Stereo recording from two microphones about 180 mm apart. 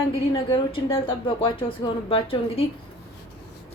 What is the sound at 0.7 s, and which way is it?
A woman's voice, 30° left (ahead or behind).